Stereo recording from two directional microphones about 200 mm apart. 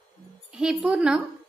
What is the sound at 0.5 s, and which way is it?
Speech, 5° right (ahead or behind).